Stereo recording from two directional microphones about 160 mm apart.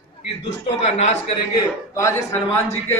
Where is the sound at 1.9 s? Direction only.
20° left (ahead or behind).